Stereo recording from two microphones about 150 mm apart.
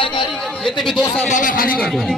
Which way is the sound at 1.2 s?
60° left (ahead or behind).